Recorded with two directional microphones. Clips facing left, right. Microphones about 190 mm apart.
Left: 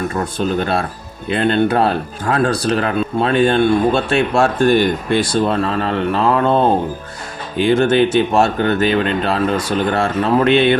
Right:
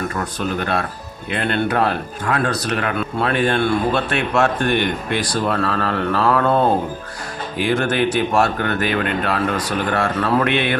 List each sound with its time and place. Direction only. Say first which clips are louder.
0.2 s speech: left 4 dB; 30° left (ahead or behind)